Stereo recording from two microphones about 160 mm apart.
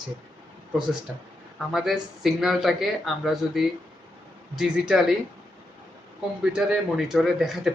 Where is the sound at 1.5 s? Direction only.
Centre (ahead or behind).